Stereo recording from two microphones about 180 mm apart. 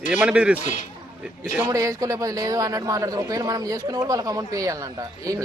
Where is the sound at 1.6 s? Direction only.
20° right (ahead or behind).